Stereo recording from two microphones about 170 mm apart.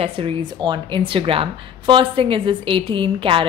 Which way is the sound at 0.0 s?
30° right (ahead or behind).